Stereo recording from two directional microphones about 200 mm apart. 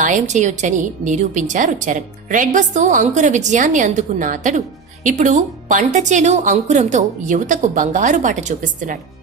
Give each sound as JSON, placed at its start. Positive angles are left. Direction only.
{"t": 0.0, "sound": "a woman's voice", "side_deg": -40}